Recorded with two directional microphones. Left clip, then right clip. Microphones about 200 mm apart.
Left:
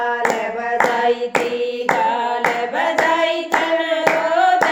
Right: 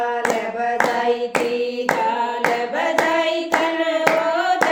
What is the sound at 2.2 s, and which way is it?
Hands, centre (ahead or behind).